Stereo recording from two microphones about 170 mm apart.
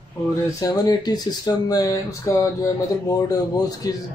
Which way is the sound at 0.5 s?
25° left (ahead or behind).